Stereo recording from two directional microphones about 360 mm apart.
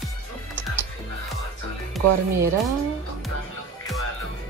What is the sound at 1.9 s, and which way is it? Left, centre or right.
Speech, centre.